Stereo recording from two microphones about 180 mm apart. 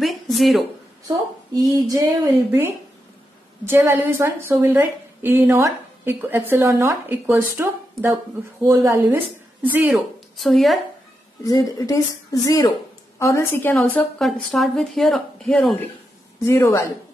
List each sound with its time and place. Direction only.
0.0 s speech: centre (ahead or behind)
1.0 s a woman's voice: 20° right (ahead or behind)
9.9 s a woman's voice: centre (ahead or behind)
11.4 s a woman's voice: 20° left (ahead or behind); by 15.9 s 5° left (ahead or behind)
16.4 s a woman's voice: 15° left (ahead or behind)